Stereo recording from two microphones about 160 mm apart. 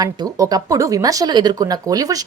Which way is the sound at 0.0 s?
25° right (ahead or behind).